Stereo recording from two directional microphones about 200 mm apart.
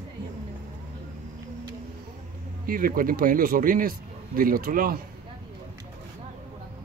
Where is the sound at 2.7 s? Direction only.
45° right (ahead or behind).